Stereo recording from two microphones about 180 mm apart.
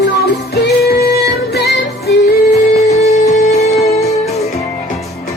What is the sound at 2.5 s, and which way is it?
Music, 40° left (ahead or behind).